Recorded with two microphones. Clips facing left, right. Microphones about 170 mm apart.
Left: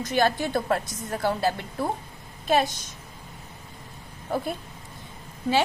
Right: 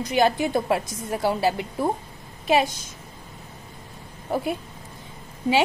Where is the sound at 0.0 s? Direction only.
15° right (ahead or behind).